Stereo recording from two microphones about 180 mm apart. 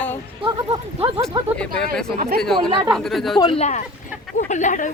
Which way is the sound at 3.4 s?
35° left (ahead or behind).